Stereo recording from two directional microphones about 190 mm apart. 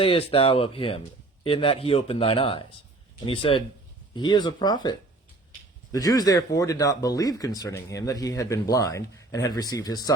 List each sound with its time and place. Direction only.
0.0 s speech: 30° left (ahead or behind)